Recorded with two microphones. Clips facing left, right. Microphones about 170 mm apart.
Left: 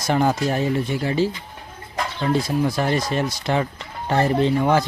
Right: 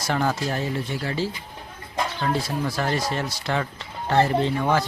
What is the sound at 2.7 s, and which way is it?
Speech, 20° left (ahead or behind).